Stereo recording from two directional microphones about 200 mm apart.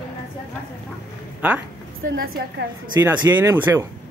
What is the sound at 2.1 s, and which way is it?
Speech, 55° right (ahead or behind).